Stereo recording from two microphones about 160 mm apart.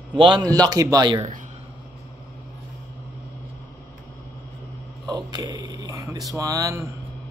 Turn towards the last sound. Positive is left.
turn(degrees=-20)  # may be behind; listen again after turning